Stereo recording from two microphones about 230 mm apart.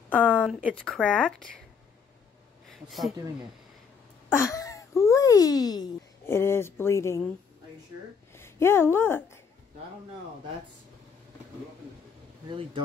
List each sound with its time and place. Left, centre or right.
0.1 s speech: centre
0.6 s speech: centre
2.7 s speech: centre
4.3 s speech: centre
8.4 s speech: centre
12.4 s speech: right